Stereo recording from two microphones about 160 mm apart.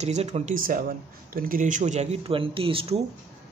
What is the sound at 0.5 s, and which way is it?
Speech, 60° right (ahead or behind).